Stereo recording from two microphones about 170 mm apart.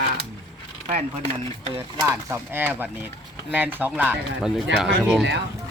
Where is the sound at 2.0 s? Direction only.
15° right (ahead or behind).